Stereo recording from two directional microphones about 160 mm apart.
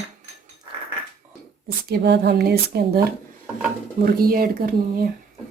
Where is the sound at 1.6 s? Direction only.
85° right.